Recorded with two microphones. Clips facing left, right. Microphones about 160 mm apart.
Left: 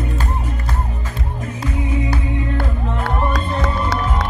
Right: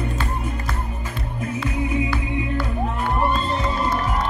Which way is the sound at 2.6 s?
65° left (ahead or behind).